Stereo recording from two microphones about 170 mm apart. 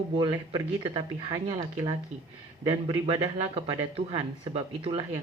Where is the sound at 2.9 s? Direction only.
30° right (ahead or behind).